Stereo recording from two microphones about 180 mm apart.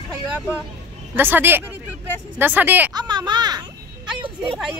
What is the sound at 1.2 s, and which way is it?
A woman's voice, 10° right (ahead or behind).